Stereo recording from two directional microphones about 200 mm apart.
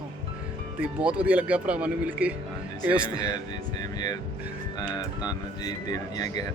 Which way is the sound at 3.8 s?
20° left (ahead or behind).